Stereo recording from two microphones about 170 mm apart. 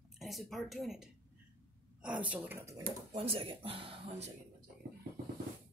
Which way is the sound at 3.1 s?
35° right (ahead or behind).